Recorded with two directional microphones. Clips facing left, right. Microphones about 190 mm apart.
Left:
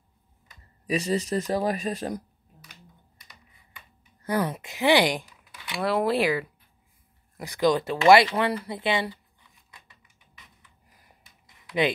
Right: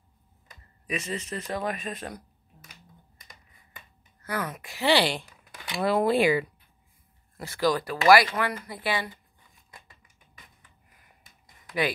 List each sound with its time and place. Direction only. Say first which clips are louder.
0.8 s speech: left 7 dB; 35° left (ahead or behind)
4.3 s speech: left 6 dB; 30° left (ahead or behind); by 5.2 s 15° left (ahead or behind)
5.8 s speech: right 1 dB; centre (ahead or behind)
7.3 s speech: left 3 dB; 15° left (ahead or behind)
9.7 s a sound: right 3 dB; 50° right (ahead or behind)